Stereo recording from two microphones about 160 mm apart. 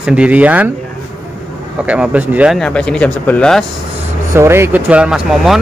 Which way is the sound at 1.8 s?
10° right (ahead or behind).